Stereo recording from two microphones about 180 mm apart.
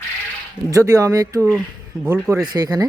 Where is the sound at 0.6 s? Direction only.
20° right (ahead or behind).